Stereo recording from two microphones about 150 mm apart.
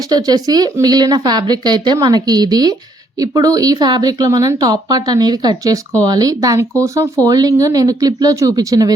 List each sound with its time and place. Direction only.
0.1 s speech: 25° right (ahead or behind)